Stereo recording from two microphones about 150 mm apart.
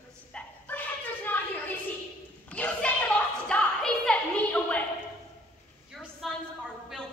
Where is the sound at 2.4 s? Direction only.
10° left (ahead or behind).